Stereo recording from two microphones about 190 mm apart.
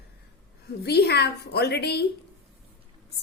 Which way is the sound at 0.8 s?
60° left (ahead or behind).